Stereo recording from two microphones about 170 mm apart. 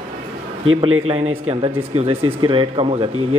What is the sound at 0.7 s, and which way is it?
Speech, 35° right (ahead or behind).